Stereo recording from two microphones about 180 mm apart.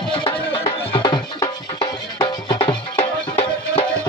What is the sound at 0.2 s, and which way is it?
Music, 25° left (ahead or behind).